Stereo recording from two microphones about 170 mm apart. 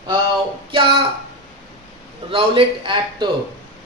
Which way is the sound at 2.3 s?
30° right (ahead or behind).